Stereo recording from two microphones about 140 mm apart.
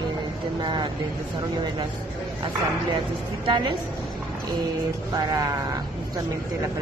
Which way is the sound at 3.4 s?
35° right (ahead or behind).